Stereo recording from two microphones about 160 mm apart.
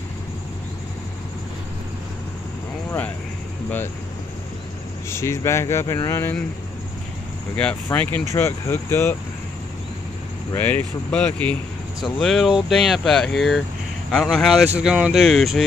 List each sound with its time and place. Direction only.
5.1 s speech: 15° left (ahead or behind)
7.5 s speech: 10° left (ahead or behind)
10.5 s speech: 10° left (ahead or behind)